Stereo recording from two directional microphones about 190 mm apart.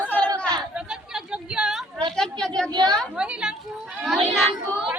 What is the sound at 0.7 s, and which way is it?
Chatter, 5° right (ahead or behind).